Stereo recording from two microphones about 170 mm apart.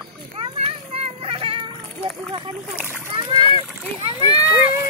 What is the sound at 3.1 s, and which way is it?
Splash, 25° right (ahead or behind).